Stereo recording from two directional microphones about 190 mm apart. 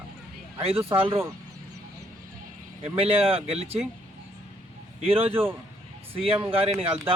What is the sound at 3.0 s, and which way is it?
Speech, 30° right (ahead or behind).